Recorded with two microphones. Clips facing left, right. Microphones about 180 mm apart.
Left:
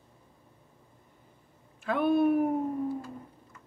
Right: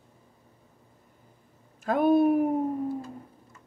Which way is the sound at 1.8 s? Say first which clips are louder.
Right 3 dB; 40° right (ahead or behind).